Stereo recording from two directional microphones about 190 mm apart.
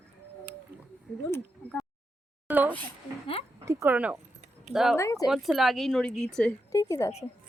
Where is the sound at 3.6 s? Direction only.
15° right (ahead or behind).